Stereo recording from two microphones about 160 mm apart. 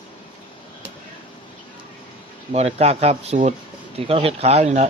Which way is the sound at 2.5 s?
40° right (ahead or behind).